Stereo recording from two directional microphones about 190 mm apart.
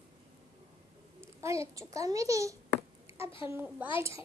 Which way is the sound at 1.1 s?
15° right (ahead or behind).